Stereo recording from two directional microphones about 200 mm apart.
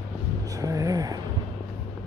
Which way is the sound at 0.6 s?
15° right (ahead or behind).